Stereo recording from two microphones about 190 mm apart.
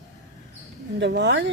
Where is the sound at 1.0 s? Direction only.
65° right (ahead or behind).